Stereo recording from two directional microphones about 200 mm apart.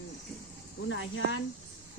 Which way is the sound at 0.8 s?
70° left (ahead or behind).